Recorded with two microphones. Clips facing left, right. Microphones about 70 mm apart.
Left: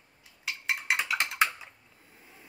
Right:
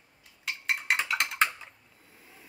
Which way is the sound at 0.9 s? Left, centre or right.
Centre.